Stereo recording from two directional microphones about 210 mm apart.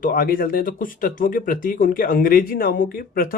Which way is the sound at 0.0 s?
45° left (ahead or behind).